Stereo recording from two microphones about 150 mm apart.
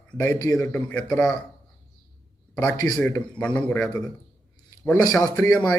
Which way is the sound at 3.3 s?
10° left (ahead or behind).